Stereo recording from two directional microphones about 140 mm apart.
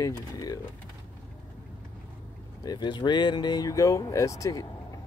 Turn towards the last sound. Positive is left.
turn(degrees=25)  # may be behind; listen again after turning